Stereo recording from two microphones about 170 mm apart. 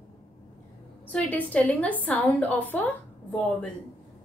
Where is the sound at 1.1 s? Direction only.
10° left (ahead or behind).